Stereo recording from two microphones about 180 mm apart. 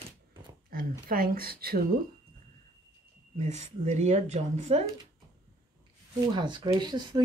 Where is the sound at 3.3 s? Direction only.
40° right (ahead or behind).